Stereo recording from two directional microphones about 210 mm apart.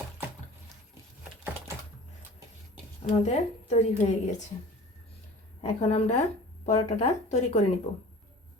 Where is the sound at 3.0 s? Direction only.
30° left (ahead or behind).